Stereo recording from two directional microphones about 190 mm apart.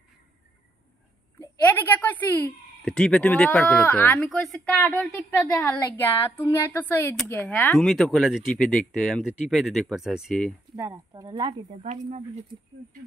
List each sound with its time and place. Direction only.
1.4 s speech: 10° left (ahead or behind)
10.8 s speech: 20° right (ahead or behind)
11.8 s speech: 35° right (ahead or behind)